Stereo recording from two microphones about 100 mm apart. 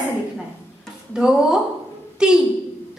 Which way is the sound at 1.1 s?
5° right (ahead or behind).